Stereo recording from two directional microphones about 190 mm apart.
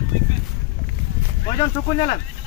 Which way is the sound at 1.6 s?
30° left (ahead or behind).